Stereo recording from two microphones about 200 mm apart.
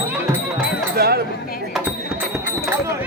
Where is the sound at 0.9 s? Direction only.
50° right (ahead or behind).